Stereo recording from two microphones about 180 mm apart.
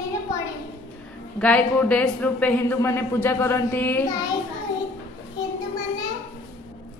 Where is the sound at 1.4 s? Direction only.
5° left (ahead or behind).